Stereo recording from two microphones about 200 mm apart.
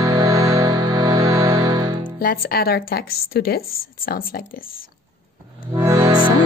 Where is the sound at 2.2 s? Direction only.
50° left (ahead or behind).